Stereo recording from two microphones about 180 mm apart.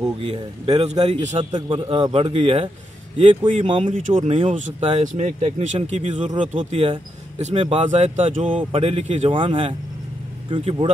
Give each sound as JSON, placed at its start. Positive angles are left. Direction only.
{"t": 0.7, "sound": "speech", "side_deg": -35}
{"t": 1.4, "sound": "a man's voice", "side_deg": -25}